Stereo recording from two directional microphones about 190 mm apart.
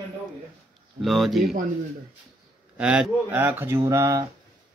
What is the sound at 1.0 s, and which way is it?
Speech, centre (ahead or behind).